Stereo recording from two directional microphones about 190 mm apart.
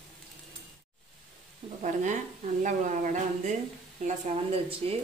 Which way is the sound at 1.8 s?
40° right (ahead or behind).